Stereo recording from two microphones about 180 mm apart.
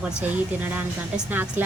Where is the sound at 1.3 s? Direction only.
10° right (ahead or behind).